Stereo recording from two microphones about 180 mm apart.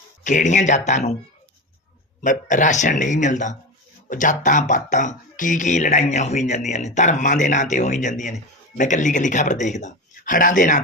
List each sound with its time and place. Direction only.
0.3 s speech: 45° left (ahead or behind)
2.2 s speech: 45° left (ahead or behind)